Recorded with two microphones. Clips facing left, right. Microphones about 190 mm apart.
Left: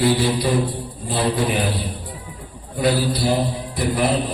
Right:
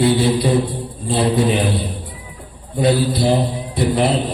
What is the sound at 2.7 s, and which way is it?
Mantra, 25° right (ahead or behind).